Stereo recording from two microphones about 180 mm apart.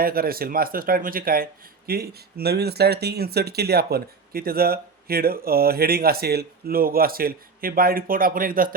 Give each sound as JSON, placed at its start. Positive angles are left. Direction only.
{"t": 0.0, "sound": "speech", "side_deg": -55}